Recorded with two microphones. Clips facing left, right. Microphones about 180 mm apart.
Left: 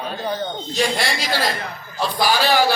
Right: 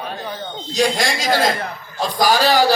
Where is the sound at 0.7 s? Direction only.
40° right (ahead or behind).